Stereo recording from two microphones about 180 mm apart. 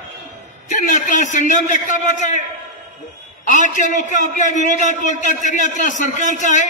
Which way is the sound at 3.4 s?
45° left (ahead or behind).